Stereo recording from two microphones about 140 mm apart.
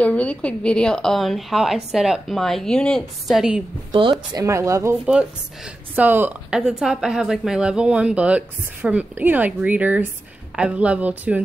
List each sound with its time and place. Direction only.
0.0 s a woman's voice: 10° left (ahead or behind)
3.9 s speech: 35° right (ahead or behind)
5.9 s speech: 15° right (ahead or behind)